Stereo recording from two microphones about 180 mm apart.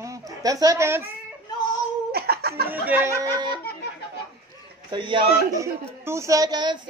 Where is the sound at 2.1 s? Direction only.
60° right (ahead or behind).